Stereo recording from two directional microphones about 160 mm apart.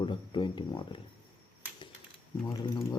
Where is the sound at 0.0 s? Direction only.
30° left (ahead or behind).